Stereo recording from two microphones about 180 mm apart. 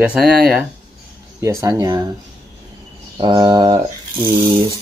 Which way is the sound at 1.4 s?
15° right (ahead or behind).